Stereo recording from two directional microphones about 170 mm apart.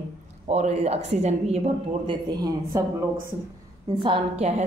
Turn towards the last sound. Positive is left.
turn(degrees=-40)  # may be behind; listen again after turning